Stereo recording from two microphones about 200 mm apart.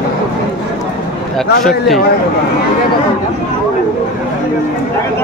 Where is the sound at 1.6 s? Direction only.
Centre (ahead or behind).